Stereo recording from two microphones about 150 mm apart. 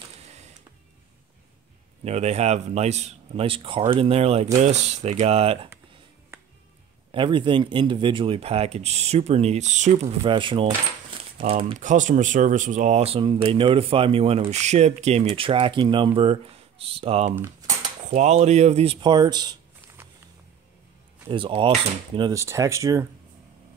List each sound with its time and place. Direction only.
0.2 s printer: 50° right (ahead or behind)
2.0 s speech: 45° right (ahead or behind)
7.1 s speech: 35° right (ahead or behind); by 10.3 s 50° right (ahead or behind)
10.3 s speech: 35° right (ahead or behind)
11.8 s speech: 55° right (ahead or behind); by 19.6 s 30° right (ahead or behind)
21.3 s speech: 35° right (ahead or behind)
22.3 s speech: 20° right (ahead or behind)